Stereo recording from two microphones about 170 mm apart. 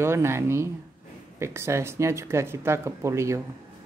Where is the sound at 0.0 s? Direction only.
15° right (ahead or behind).